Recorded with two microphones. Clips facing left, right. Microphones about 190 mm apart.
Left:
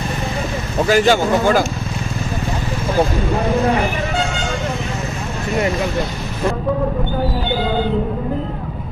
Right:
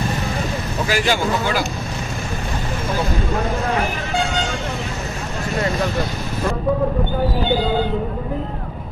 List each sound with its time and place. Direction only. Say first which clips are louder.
0.8 s a man's voice: left 6 dB; 45° left (ahead or behind)